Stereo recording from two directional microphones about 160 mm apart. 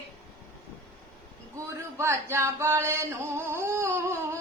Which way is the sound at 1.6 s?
20° right (ahead or behind).